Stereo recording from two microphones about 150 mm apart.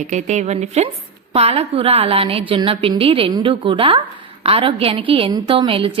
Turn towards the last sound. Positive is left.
turn(degrees=-35)  # may be behind; listen again after turning